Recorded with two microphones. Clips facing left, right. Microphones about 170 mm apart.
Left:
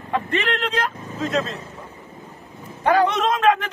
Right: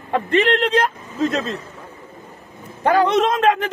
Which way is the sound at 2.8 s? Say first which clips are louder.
Right 2 dB; 40° right (ahead or behind).